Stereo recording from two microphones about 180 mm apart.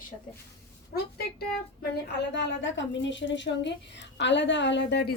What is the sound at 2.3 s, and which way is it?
A woman's voice, 85° left.